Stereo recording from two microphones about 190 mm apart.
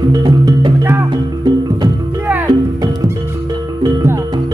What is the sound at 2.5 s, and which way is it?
Music, 20° right (ahead or behind).